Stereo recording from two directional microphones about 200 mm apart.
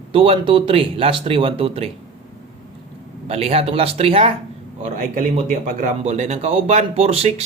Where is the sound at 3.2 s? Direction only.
30° right (ahead or behind).